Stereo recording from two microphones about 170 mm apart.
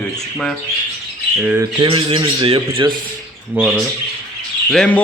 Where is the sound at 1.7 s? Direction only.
30° right (ahead or behind).